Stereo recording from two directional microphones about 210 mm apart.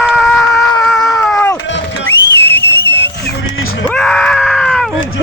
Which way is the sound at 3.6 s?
75° left (ahead or behind).